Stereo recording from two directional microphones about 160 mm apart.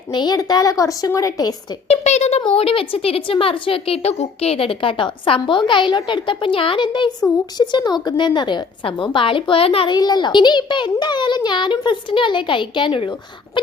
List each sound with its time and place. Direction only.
0.1 s a woman's voice: 25° left (ahead or behind)
1.9 s a woman's voice: 45° left (ahead or behind)